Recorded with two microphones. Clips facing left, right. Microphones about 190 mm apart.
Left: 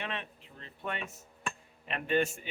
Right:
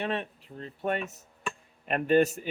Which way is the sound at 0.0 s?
40° right (ahead or behind).